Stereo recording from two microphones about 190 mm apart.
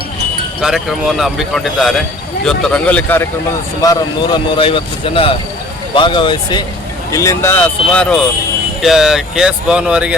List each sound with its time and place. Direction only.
0.6 s a man's voice: centre (ahead or behind)
3.8 s a man's voice: 20° left (ahead or behind); by 10.2 s 5° right (ahead or behind)